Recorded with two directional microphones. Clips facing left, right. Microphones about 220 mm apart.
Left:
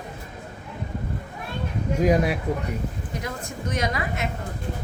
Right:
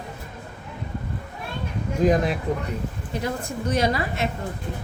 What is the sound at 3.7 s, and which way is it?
Speech, 30° right (ahead or behind).